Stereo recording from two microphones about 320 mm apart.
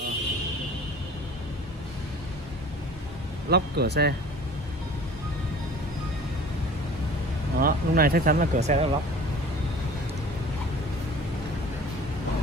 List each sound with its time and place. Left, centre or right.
3.4 s speech: right
7.5 s speech: right